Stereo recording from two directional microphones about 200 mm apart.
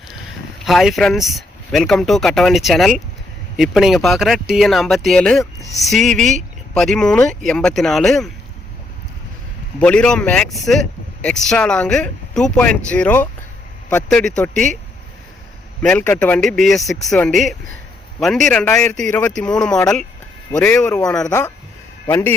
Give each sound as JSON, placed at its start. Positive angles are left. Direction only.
{"t": 0.6, "sound": "speech", "side_deg": 0}
{"t": 9.8, "sound": "a man's voice", "side_deg": 5}
{"t": 15.8, "sound": "a man's voice", "side_deg": 5}